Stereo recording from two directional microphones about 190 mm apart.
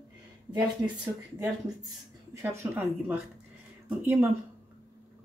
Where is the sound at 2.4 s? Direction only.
10° right (ahead or behind).